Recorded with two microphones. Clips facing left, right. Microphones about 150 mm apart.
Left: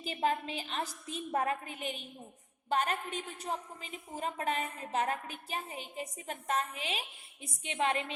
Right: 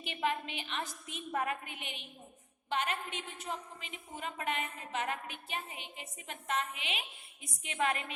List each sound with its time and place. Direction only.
0.0 s a woman's voice: 35° left (ahead or behind)